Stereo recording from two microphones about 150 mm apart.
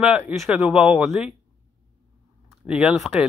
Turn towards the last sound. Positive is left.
turn(degrees=-5)  # may be behind; listen again after turning